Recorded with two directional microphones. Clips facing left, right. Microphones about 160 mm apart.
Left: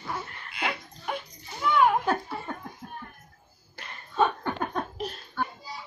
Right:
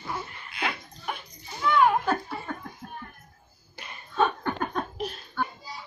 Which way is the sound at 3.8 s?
10° right (ahead or behind).